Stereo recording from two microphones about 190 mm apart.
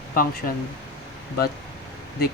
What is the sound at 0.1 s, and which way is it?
Speech, 50° left (ahead or behind).